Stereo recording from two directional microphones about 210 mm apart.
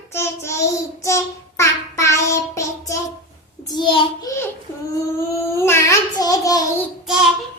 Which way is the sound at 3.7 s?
20° left (ahead or behind).